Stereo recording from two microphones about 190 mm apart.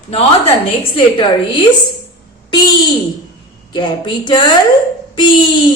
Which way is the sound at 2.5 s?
25° left (ahead or behind).